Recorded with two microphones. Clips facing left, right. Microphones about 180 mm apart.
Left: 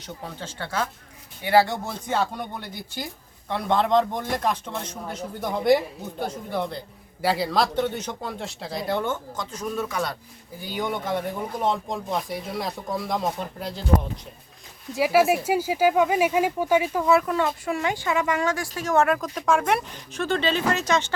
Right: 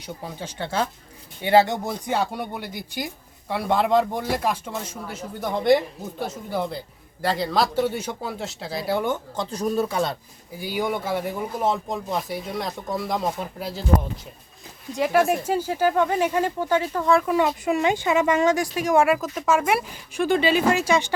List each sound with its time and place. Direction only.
0.0 s speech: 15° right (ahead or behind)
7.2 s speech: 5° left (ahead or behind); by 9.1 s 10° right (ahead or behind)
9.3 s speech: 35° right (ahead or behind)
10.6 s speech: 10° right (ahead or behind)
14.9 s speech: 5° left (ahead or behind)
17.2 s speech: 15° right (ahead or behind)